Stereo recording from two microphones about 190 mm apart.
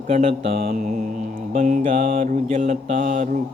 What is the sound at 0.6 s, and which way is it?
Mantra, 50° right (ahead or behind).